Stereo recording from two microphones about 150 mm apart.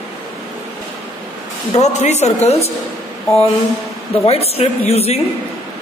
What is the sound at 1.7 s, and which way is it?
Speech, 50° left (ahead or behind).